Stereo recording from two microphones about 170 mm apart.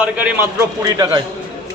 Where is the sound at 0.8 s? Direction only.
20° right (ahead or behind).